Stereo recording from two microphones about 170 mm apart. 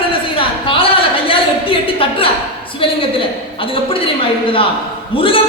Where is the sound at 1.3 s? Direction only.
30° left (ahead or behind).